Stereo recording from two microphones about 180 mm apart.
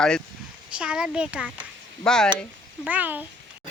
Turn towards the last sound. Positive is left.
turn(degrees=-10)  # may be behind; listen again after turning